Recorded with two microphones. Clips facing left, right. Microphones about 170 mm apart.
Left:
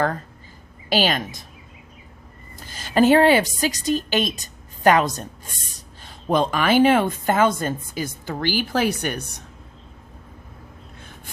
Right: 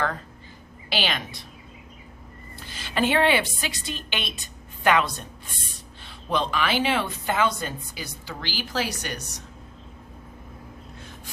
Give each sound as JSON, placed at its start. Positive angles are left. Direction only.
{"t": 0.9, "sound": "a woman's voice", "side_deg": 45}
{"t": 2.6, "sound": "a woman's voice", "side_deg": 45}